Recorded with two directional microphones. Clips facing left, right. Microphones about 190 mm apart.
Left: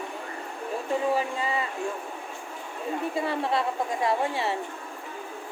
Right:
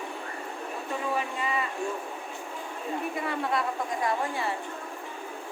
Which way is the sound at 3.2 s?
30° left (ahead or behind).